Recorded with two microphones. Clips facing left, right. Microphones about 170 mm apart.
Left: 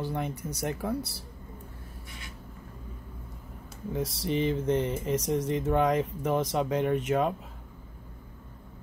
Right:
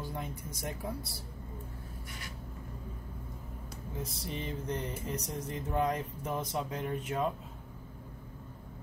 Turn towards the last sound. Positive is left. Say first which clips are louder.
# left 7 dB
turn(degrees=80)